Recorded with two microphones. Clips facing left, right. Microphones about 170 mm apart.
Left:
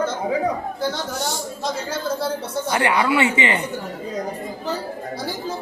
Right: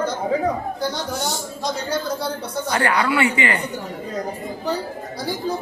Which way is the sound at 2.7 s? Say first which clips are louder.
Left 1 dB; 20° left (ahead or behind).